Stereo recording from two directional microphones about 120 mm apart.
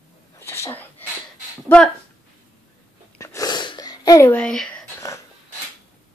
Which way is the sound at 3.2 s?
30° left (ahead or behind).